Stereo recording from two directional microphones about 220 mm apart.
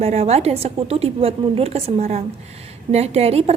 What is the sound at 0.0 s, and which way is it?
A woman's voice, 30° right (ahead or behind).